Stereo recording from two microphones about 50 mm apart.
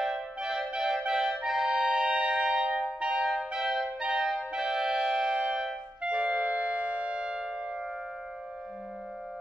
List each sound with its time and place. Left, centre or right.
0.0 s music: centre